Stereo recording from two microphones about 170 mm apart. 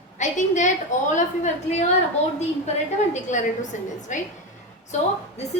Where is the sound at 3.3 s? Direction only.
45° left (ahead or behind).